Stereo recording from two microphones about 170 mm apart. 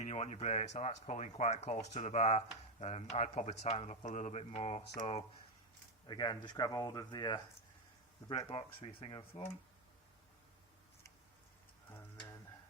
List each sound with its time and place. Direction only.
0.0 s speech: 40° left (ahead or behind)
6.1 s speech: 25° left (ahead or behind)
11.9 s a sound: 15° left (ahead or behind)